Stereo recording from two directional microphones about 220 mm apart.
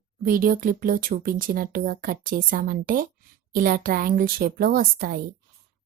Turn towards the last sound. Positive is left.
turn(degrees=-40)  # may be behind; listen again after turning